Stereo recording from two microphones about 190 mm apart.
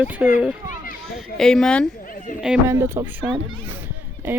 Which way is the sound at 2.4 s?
5° right (ahead or behind).